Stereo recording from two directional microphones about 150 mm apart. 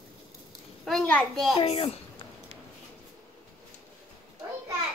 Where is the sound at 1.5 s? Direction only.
40° left (ahead or behind).